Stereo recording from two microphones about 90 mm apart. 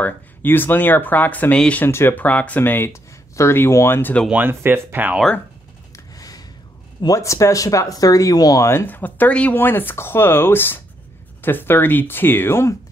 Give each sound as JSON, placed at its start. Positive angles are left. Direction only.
{"t": 0.0, "sound": "speech", "side_deg": 20}
{"t": 1.9, "sound": "speech", "side_deg": 25}
{"t": 4.3, "sound": "speech", "side_deg": -20}
{"t": 6.1, "sound": "a sound", "side_deg": 45}
{"t": 7.2, "sound": "speech", "side_deg": 35}
{"t": 8.6, "sound": "speech", "side_deg": 25}